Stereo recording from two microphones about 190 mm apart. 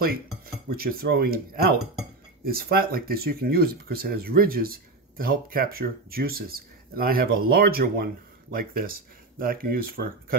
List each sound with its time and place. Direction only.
0.7 s speech: 50° right (ahead or behind)